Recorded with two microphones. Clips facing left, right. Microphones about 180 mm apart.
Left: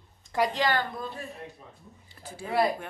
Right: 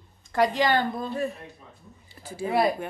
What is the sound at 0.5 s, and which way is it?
Speech, 20° right (ahead or behind).